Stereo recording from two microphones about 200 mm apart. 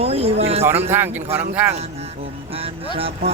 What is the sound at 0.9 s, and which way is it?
Speech, 10° right (ahead or behind).